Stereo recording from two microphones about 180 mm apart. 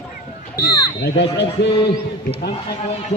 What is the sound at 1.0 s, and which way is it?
Speech, 70° left (ahead or behind).